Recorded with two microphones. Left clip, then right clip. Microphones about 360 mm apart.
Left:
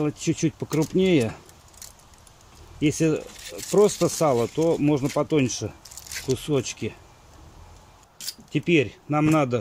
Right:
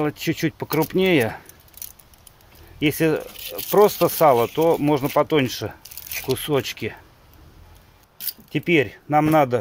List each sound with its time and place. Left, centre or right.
0.0 s speech: right
2.8 s speech: right
4.6 s speech: right
4.9 s speech: right
8.5 s speech: right